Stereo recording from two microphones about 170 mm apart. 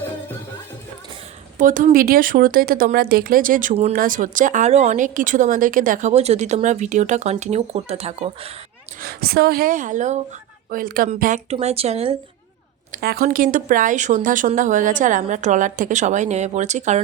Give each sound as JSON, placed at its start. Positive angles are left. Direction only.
{"t": 1.5, "sound": "a woman's voice", "side_deg": -50}
{"t": 9.0, "sound": "speech", "side_deg": -65}
{"t": 11.4, "sound": "speech", "side_deg": -35}
{"t": 12.9, "sound": "a woman's voice", "side_deg": -65}